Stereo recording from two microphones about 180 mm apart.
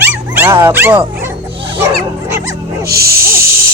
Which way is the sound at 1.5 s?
30° right (ahead or behind).